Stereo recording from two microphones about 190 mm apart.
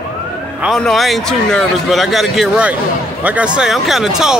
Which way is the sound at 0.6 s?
Centre (ahead or behind).